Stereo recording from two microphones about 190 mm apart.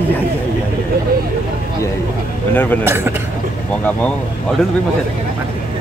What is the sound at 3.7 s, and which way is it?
Speech, 5° left (ahead or behind).